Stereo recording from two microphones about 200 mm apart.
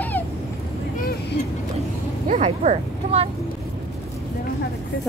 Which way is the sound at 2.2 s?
35° right (ahead or behind).